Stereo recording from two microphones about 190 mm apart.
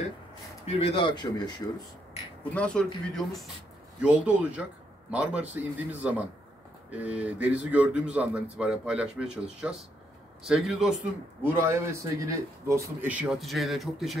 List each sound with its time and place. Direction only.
0.7 s a man's voice: 30° left (ahead or behind)
2.5 s a man's voice: 5° left (ahead or behind)
11.4 s a man's voice: 15° right (ahead or behind)